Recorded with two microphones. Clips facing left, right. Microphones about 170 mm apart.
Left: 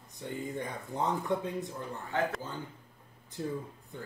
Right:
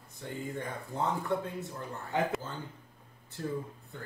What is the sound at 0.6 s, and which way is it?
Speech, 20° left (ahead or behind).